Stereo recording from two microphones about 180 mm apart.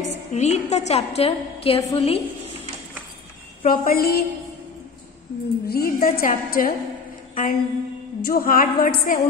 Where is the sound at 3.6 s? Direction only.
55° left (ahead or behind).